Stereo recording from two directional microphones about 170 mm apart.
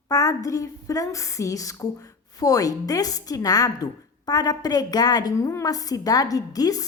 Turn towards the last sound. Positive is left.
turn(degrees=20)  # may be behind; listen again after turning